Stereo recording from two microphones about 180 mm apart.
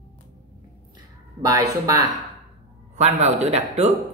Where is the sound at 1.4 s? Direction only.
20° right (ahead or behind).